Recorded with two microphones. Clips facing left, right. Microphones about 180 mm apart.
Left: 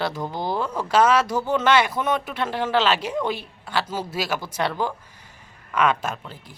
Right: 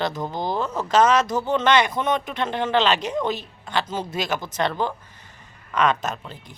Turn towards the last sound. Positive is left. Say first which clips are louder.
# right 1 dB
turn(degrees=10)  # may be behind; listen again after turning